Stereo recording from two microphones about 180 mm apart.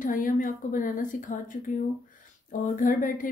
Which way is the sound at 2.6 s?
50° left (ahead or behind).